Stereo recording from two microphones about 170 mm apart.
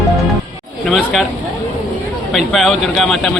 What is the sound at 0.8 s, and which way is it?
Chatter, centre (ahead or behind).